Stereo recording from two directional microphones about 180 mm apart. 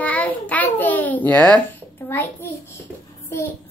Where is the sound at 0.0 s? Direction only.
10° left (ahead or behind).